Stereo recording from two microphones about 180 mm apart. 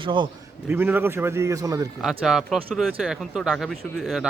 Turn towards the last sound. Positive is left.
turn(degrees=0)  # may be behind; listen again after turning